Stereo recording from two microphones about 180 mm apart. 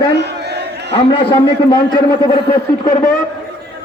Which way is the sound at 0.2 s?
65° right (ahead or behind).